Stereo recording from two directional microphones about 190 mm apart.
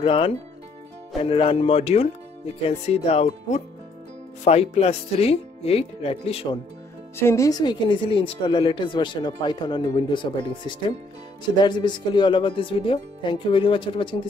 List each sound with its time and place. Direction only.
0.0 s speech: 30° left (ahead or behind)
7.2 s speech: 15° left (ahead or behind)
11.5 s speech: 25° left (ahead or behind)